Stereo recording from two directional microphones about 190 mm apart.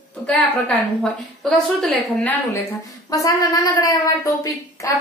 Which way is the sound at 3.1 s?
20° left (ahead or behind).